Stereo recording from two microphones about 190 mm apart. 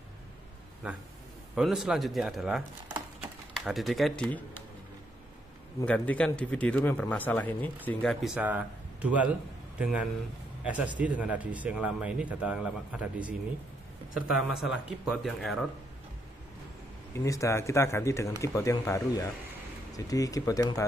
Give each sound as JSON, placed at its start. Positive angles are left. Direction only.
{"t": 0.8, "sound": "speech", "side_deg": -5}
{"t": 5.9, "sound": "speech", "side_deg": 5}
{"t": 17.2, "sound": "speech", "side_deg": 15}